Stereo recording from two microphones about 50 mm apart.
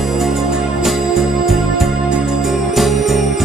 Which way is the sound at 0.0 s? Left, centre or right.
Centre.